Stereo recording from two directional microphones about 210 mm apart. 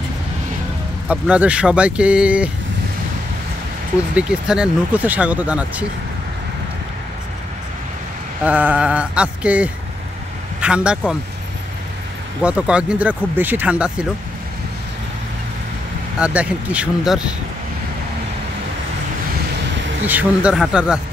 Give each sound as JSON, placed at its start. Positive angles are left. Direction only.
{"t": 1.0, "sound": "speech", "side_deg": -5}
{"t": 4.1, "sound": "speech", "side_deg": -5}
{"t": 8.5, "sound": "speech", "side_deg": -5}
{"t": 12.4, "sound": "speech", "side_deg": -5}
{"t": 16.2, "sound": "speech", "side_deg": -5}
{"t": 20.1, "sound": "speech", "side_deg": -5}